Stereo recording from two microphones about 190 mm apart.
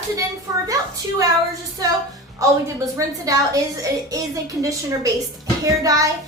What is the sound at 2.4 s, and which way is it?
A woman's voice, 15° right (ahead or behind).